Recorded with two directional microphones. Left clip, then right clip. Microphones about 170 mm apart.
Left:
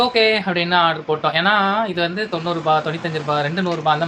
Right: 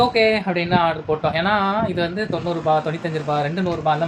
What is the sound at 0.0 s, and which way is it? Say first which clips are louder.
Speech: left 1 dB; 10° right (ahead or behind).